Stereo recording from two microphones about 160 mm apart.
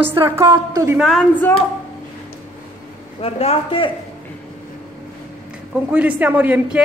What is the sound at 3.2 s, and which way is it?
Speech, 35° left (ahead or behind).